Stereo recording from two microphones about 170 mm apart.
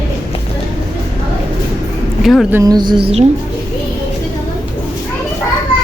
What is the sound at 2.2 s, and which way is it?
Speech, centre (ahead or behind).